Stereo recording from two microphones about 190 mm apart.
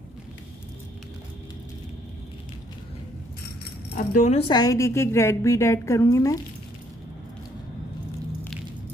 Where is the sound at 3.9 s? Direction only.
40° left (ahead or behind).